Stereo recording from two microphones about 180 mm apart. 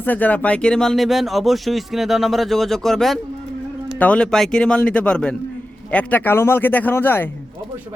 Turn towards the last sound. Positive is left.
turn(degrees=10)  # may be behind; listen again after turning